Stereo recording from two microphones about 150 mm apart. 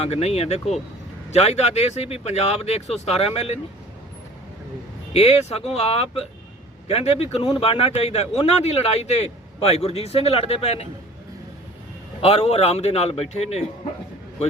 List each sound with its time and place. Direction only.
0.0 s a man's voice: 45° left (ahead or behind)
5.1 s a man's voice: 45° left (ahead or behind)
12.2 s a man's voice: 40° left (ahead or behind)